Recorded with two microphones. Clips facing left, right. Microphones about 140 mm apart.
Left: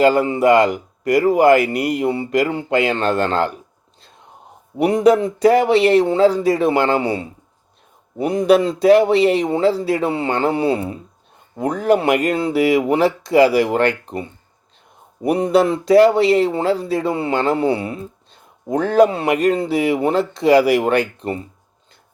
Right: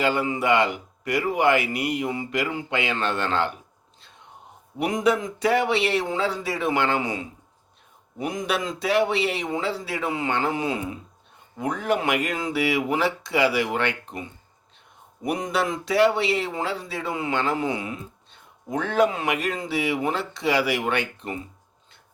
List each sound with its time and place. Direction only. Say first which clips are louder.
0.0 s speech: left 9 dB; 40° left (ahead or behind)
4.8 s speech: left 9 dB; 35° left (ahead or behind)